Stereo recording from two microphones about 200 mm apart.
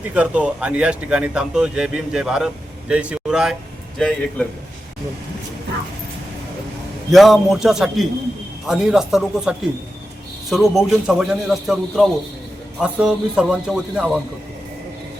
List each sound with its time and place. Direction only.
0.1 s speech: 5° right (ahead or behind)
7.1 s speech: centre (ahead or behind)